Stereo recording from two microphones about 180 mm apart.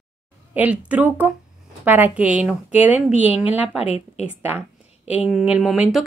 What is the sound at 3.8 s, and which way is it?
Speech, 35° left (ahead or behind).